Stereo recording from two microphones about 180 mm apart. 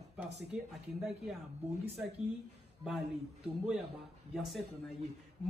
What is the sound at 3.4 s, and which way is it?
Speech, 5° right (ahead or behind).